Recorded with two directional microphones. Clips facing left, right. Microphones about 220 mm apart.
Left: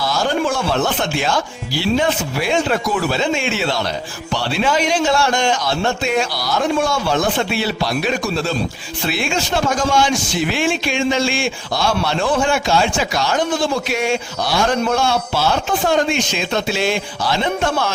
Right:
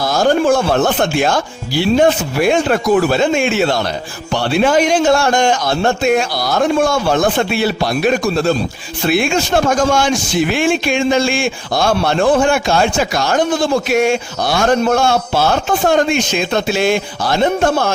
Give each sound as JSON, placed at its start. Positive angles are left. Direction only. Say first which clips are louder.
{"t": 0.0, "sound": "a man's voice", "louder": "right 6 dB", "side_deg": -45}